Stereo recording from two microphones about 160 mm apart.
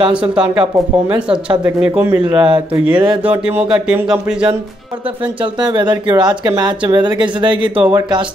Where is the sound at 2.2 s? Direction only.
30° right (ahead or behind).